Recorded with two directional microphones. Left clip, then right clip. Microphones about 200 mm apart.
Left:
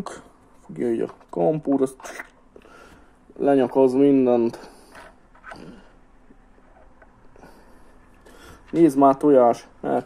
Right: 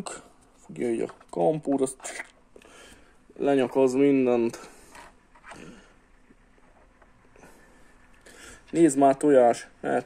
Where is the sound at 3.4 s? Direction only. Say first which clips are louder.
Left 5 dB; 5° right (ahead or behind).